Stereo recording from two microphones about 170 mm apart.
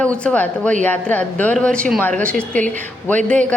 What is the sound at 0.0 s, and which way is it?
Speech, 5° left (ahead or behind).